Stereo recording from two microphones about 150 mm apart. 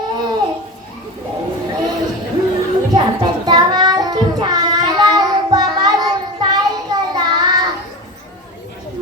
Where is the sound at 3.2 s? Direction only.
30° right (ahead or behind).